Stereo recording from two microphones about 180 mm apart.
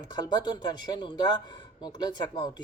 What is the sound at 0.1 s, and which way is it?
Speech, 25° left (ahead or behind).